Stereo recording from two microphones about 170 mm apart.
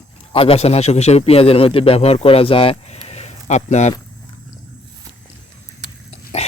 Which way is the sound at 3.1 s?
35° left (ahead or behind).